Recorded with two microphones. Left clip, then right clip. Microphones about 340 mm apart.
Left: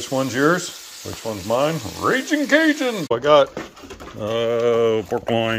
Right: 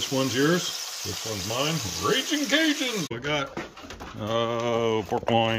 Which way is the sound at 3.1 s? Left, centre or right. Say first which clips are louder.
Left 14 dB; left.